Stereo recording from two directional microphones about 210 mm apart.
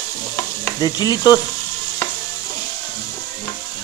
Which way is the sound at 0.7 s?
20° left (ahead or behind).